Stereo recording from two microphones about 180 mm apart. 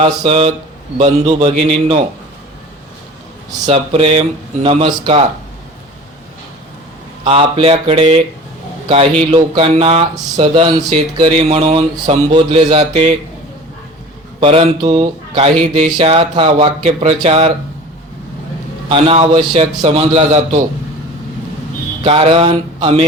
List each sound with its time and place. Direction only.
0.0 s speech: 35° right (ahead or behind)
3.7 s speech: 35° right (ahead or behind)
7.3 s speech: 30° right (ahead or behind)
9.3 s speech: 30° right (ahead or behind)
14.4 s speech: 35° right (ahead or behind)
18.9 s speech: 30° right (ahead or behind)
22.0 s speech: 35° right (ahead or behind)